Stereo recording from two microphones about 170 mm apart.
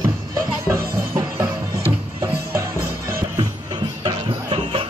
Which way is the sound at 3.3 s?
25° right (ahead or behind).